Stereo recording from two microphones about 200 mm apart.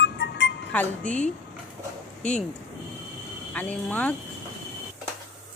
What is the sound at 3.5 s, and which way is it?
Speech, 5° left (ahead or behind).